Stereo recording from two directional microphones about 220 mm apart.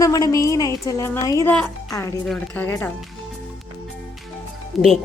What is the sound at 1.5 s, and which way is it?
A woman's voice, 5° left (ahead or behind).